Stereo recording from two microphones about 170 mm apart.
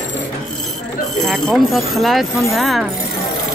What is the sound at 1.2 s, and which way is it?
Speech, centre (ahead or behind).